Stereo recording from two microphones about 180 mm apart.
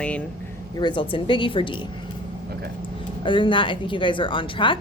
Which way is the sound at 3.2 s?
25° left (ahead or behind).